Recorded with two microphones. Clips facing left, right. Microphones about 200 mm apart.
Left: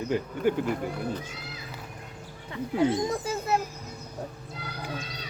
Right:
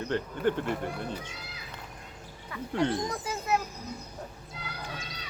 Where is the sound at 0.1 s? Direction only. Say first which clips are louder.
Left 2 dB; 10° left (ahead or behind).